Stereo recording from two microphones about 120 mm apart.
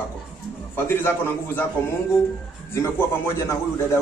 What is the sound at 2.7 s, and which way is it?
A man's voice, 20° left (ahead or behind).